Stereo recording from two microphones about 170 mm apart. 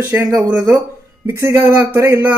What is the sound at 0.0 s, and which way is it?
Speech, 15° right (ahead or behind).